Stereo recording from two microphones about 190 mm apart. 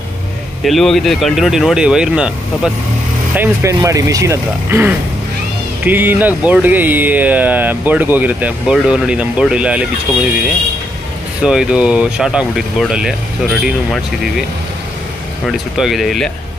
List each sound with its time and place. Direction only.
0.7 s speech: centre (ahead or behind)
3.3 s speech: 15° right (ahead or behind)
11.4 s speech: 5° right (ahead or behind)
15.4 s speech: centre (ahead or behind)